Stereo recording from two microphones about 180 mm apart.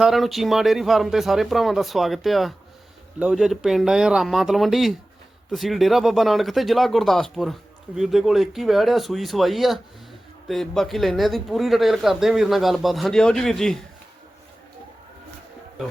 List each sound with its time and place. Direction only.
0.0 s speech: centre (ahead or behind)